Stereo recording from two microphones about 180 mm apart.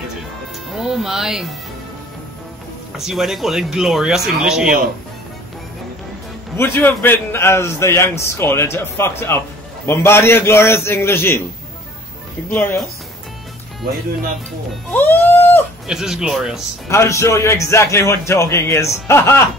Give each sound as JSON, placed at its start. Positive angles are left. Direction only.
{"t": 0.8, "sound": "speech", "side_deg": 0}
{"t": 3.0, "sound": "speech", "side_deg": 0}
{"t": 6.5, "sound": "a man's voice", "side_deg": 15}
{"t": 12.4, "sound": "a man's voice", "side_deg": 15}
{"t": 14.9, "sound": "music", "side_deg": 10}
{"t": 15.9, "sound": "speech", "side_deg": -5}
{"t": 16.9, "sound": "a man's voice", "side_deg": 15}